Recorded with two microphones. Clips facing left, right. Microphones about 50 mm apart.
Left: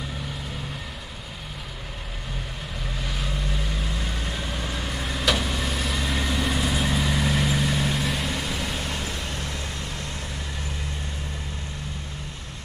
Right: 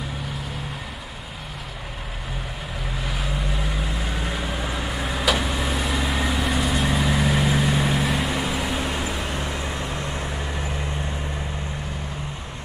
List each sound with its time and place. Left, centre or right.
3.0 s vehicle: centre; by 10.7 s right